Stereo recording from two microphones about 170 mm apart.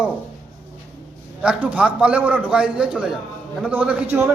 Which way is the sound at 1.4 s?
10° right (ahead or behind).